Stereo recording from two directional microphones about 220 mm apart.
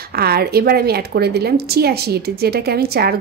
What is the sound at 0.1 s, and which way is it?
A woman's voice, 45° right (ahead or behind).